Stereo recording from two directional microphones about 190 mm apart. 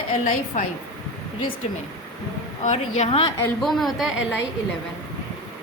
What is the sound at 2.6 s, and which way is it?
Speech, 35° left (ahead or behind).